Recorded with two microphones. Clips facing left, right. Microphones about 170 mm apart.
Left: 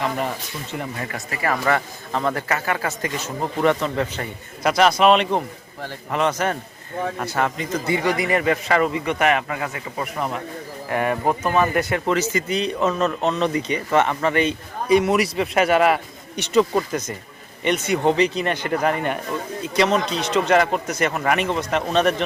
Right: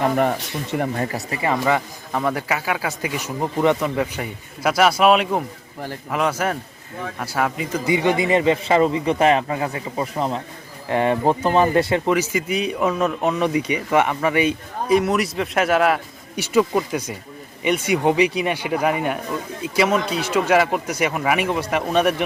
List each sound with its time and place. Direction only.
0.0 s speech: 50° right (ahead or behind)
0.9 s speech: 35° right (ahead or behind)
1.5 s a man's voice: 10° right (ahead or behind); by 12.0 s 25° right (ahead or behind)
12.0 s speech: 10° right (ahead or behind)